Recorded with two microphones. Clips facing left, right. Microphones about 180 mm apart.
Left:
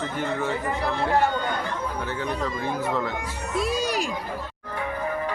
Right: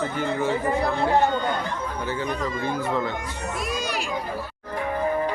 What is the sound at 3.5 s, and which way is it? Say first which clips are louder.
Music: left 6 dB; 30° left (ahead or behind).